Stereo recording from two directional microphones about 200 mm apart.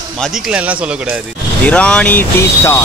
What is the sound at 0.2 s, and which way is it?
Speech, 5° right (ahead or behind).